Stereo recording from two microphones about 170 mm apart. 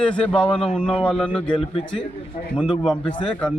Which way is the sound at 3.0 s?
30° left (ahead or behind).